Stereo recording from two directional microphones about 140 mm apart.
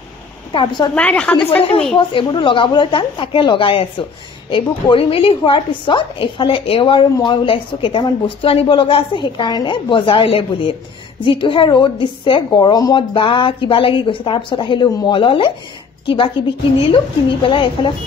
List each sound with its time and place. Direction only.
0.5 s a woman's voice: 35° left (ahead or behind)
0.9 s a woman's voice: 10° left (ahead or behind)
2.0 s a woman's voice: 35° left (ahead or behind)